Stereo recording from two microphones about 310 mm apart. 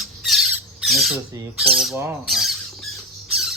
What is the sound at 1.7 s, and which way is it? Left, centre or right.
Speech, centre.